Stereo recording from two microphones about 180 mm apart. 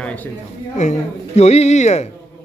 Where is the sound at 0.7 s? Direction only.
40° left (ahead or behind).